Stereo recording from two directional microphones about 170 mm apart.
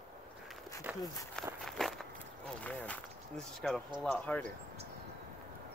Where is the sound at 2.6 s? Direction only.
10° left (ahead or behind).